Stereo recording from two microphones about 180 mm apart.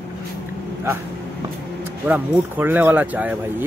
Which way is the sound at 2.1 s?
10° right (ahead or behind).